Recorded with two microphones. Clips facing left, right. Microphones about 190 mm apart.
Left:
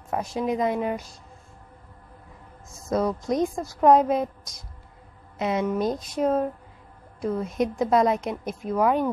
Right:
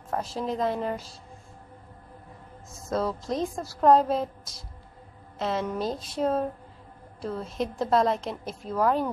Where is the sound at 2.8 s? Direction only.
15° left (ahead or behind).